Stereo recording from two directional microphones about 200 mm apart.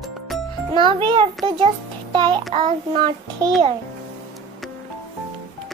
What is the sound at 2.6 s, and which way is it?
Speech, 25° right (ahead or behind).